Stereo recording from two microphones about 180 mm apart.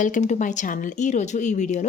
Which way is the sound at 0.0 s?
45° left (ahead or behind).